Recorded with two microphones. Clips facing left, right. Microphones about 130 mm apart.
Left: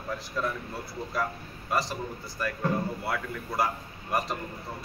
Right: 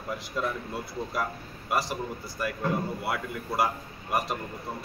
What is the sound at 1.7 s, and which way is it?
A man's voice, 10° right (ahead or behind).